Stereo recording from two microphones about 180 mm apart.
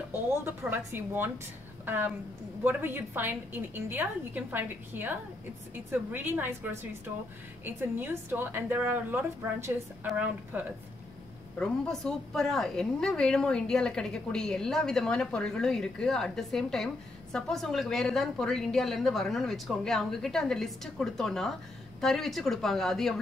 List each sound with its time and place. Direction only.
0.7 s a woman's voice: 10° right (ahead or behind)
11.5 s a woman's voice: 5° left (ahead or behind)